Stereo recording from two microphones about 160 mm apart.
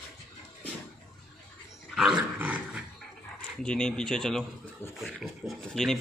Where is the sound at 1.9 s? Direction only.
5° right (ahead or behind).